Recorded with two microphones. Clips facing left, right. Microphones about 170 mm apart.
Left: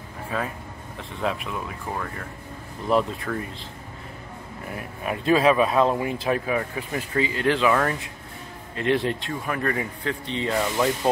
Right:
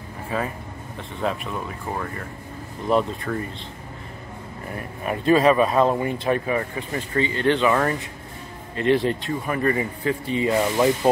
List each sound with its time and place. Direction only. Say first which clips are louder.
1.2 s speech: right 1 dB; centre (ahead or behind)
4.6 s speech: right 2 dB; 5° left (ahead or behind)
10.5 s speech: right 3 dB; 20° right (ahead or behind)